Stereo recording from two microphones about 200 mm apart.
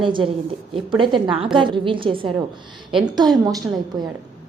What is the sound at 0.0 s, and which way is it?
A woman's voice, 25° right (ahead or behind).